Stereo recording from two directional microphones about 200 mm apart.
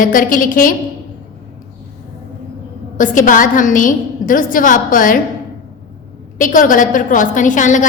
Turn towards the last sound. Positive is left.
turn(degrees=40)  # may be behind; listen again after turning